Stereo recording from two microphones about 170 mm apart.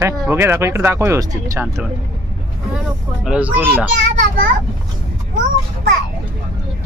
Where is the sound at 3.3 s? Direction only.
5° right (ahead or behind).